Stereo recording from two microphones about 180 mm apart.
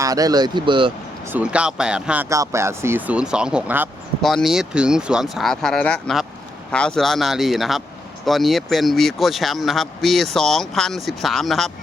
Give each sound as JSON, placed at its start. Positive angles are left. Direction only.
{"t": 0.0, "sound": "speech", "side_deg": -20}
{"t": 1.3, "sound": "speech", "side_deg": -5}
{"t": 2.3, "sound": "speech", "side_deg": -15}